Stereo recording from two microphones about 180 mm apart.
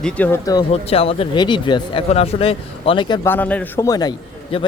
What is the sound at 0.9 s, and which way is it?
Speech, 30° left (ahead or behind).